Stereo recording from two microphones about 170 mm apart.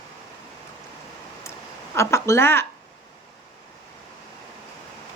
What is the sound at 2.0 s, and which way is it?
Speech, 15° left (ahead or behind).